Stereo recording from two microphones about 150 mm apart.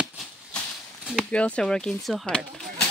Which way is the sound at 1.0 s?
5° right (ahead or behind).